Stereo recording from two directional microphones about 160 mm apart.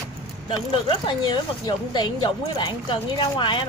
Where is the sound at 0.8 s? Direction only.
30° left (ahead or behind).